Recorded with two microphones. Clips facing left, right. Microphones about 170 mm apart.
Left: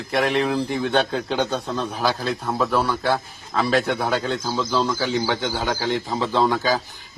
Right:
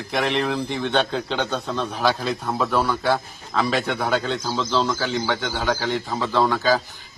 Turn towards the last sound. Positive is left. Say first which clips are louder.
# even
turn(degrees=15)  # may be behind; listen again after turning